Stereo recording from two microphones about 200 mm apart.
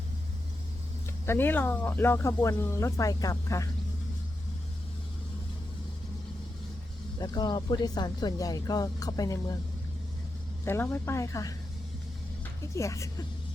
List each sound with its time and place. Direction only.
1.2 s speech: 10° left (ahead or behind)
7.2 s speech: 20° left (ahead or behind)
10.7 s speech: 10° left (ahead or behind)
12.7 s speech: 15° left (ahead or behind)